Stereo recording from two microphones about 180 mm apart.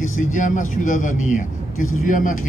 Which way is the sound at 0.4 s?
45° left (ahead or behind).